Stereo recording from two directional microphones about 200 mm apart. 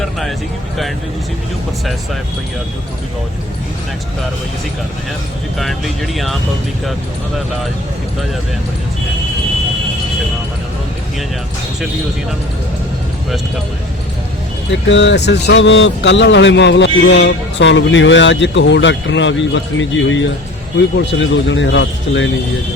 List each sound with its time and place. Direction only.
0.0 s speech: centre (ahead or behind)
5.5 s speech: centre (ahead or behind)
14.7 s speech: 65° left (ahead or behind)